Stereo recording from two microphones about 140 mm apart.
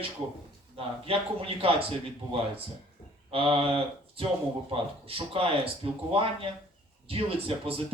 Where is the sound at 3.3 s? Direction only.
40° right (ahead or behind).